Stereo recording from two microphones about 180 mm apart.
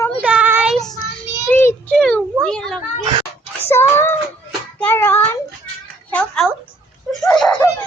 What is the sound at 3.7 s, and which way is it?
Speech, 15° left (ahead or behind).